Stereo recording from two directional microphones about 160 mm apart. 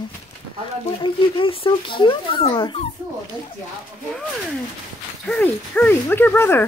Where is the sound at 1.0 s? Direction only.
30° left (ahead or behind).